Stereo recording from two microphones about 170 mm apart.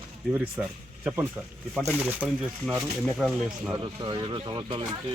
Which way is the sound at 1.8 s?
Centre (ahead or behind).